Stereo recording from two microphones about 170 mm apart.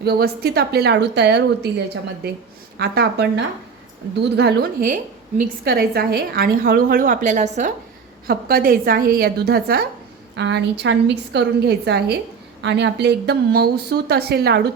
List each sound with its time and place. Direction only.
0.0 s speech: 70° right (ahead or behind); by 1.7 s 85° right
2.7 s a woman's voice: 70° right (ahead or behind); by 7.7 s 45° right (ahead or behind)
8.3 s a woman's voice: 65° right (ahead or behind)
10.3 s a woman's voice: 85° right; by 12.1 s 70° right (ahead or behind)
12.6 s speech: 90° right; by 14.6 s 70° right (ahead or behind)